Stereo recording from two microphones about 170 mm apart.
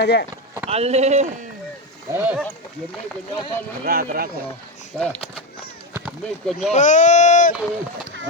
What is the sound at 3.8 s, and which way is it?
Speech, 60° right (ahead or behind).